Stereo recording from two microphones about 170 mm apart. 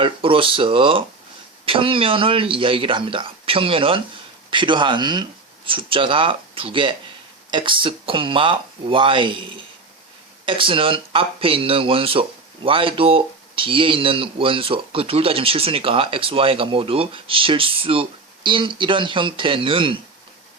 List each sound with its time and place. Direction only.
0.0 s speech: 30° right (ahead or behind)